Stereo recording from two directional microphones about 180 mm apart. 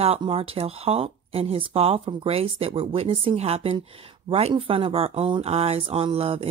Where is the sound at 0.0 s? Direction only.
35° right (ahead or behind).